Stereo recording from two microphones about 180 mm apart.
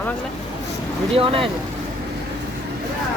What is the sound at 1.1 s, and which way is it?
Speech, 30° right (ahead or behind).